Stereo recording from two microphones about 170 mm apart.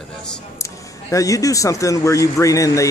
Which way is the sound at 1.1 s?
20° left (ahead or behind).